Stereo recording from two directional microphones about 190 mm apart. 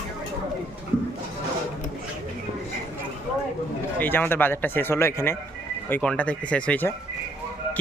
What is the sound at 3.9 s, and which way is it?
Speech, 10° left (ahead or behind).